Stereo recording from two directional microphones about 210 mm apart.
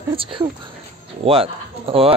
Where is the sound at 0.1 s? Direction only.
25° right (ahead or behind).